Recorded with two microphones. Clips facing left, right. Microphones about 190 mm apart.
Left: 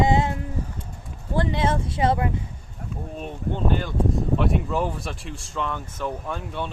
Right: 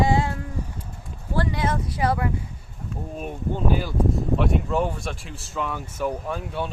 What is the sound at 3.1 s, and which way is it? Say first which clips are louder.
Speech: right 1 dB; 5° right (ahead or behind).